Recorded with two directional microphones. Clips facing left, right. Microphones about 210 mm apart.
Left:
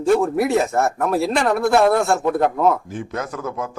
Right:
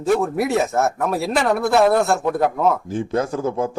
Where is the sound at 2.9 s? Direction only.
30° right (ahead or behind).